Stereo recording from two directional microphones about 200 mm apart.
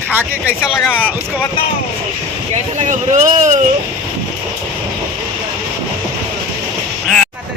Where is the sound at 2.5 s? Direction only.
35° right (ahead or behind).